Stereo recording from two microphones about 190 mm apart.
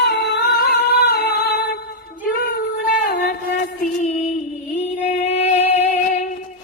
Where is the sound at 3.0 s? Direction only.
50° left (ahead or behind).